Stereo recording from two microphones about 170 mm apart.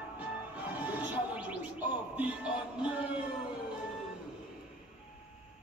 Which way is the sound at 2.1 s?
5° right (ahead or behind).